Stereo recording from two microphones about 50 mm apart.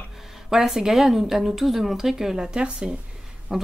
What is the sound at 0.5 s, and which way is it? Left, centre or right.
A woman's voice, centre.